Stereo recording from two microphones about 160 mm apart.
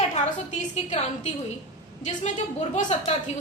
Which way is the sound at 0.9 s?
45° left (ahead or behind).